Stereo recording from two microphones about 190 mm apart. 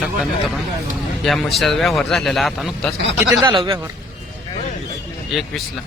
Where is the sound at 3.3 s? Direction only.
20° right (ahead or behind).